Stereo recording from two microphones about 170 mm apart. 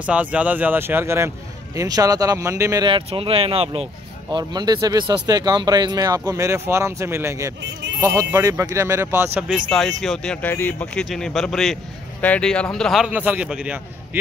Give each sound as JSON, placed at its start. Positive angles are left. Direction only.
{"t": 0.0, "sound": "speech", "side_deg": -5}
{"t": 2.9, "sound": "speech", "side_deg": -35}
{"t": 9.7, "sound": "speech", "side_deg": 0}